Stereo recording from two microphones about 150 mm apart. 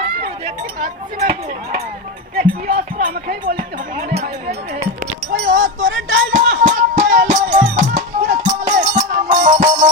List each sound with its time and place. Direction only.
0.4 s speech: 65° right (ahead or behind)
2.3 s speech: 90° right
5.3 s a sound: 55° right (ahead or behind)
6.3 s music: 55° right (ahead or behind)